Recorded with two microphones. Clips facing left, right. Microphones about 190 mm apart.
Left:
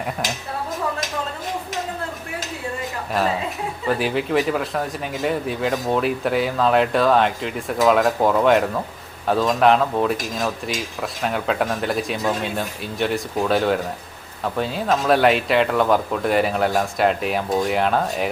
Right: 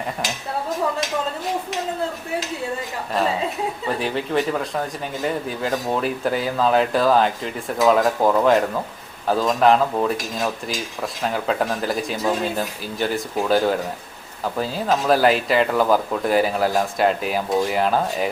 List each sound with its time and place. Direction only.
3.8 s speech: centre (ahead or behind)